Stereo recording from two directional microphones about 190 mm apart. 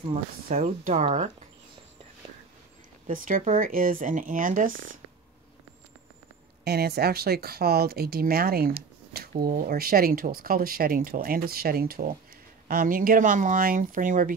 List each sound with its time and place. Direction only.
0.1 s speech: 45° right (ahead or behind)
3.1 s speech: 45° right (ahead or behind)
6.6 s speech: 55° right (ahead or behind)